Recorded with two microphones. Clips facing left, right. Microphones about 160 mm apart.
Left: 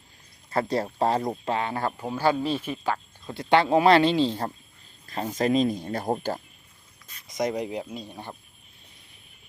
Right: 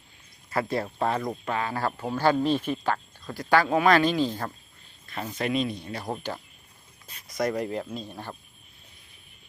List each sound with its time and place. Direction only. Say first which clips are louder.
0.5 s speech: left 2 dB; 30° left (ahead or behind)
2.0 s speech: right 2 dB; 10° left (ahead or behind)
3.3 s speech: left 2 dB; 25° left (ahead or behind)
7.3 s speech: even; 20° left (ahead or behind)